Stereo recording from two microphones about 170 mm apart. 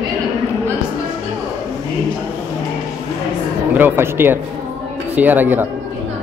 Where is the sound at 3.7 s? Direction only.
10° right (ahead or behind).